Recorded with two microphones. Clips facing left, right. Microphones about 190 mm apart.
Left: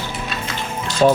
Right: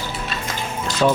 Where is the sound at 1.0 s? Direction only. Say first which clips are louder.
Left 4 dB; 30° left (ahead or behind).